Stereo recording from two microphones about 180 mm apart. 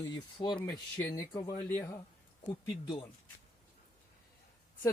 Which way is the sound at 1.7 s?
10° left (ahead or behind).